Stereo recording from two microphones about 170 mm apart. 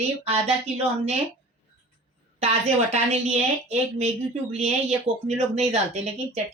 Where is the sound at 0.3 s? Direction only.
40° right (ahead or behind).